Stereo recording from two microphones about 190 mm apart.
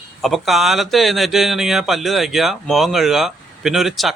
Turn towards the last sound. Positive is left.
turn(degrees=0)  # may be behind; listen again after turning